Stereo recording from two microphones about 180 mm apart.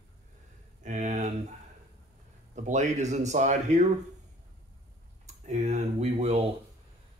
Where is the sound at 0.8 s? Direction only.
40° right (ahead or behind).